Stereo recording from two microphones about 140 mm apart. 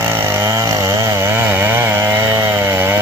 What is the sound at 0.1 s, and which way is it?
Chainsaw, 15° right (ahead or behind).